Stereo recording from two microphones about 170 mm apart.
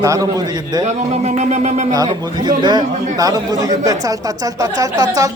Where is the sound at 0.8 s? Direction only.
40° right (ahead or behind).